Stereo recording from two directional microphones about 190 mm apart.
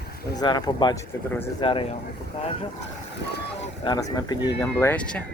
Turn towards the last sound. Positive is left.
turn(degrees=5)  # may be behind; listen again after turning